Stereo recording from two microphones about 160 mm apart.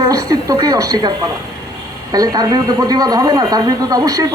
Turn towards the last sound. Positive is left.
turn(degrees=-20)  # may be behind; listen again after turning